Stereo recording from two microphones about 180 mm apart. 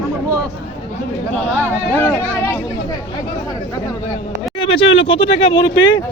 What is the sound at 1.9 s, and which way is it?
Speech, 15° left (ahead or behind).